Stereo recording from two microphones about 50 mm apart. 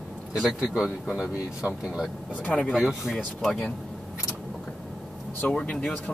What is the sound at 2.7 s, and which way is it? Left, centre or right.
Speech, centre.